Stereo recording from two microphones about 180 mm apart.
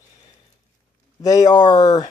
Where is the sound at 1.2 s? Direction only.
20° left (ahead or behind).